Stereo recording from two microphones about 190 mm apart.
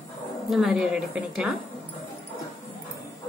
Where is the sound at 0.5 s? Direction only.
Centre (ahead or behind).